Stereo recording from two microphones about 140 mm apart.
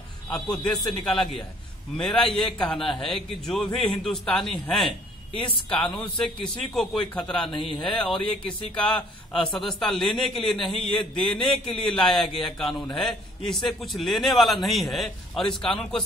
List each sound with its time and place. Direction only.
0.3 s a man's voice: 5° left (ahead or behind)
5.3 s speech: 40° left (ahead or behind)
5.7 s a man's voice: 5° left (ahead or behind)
9.3 s a man's voice: centre (ahead or behind)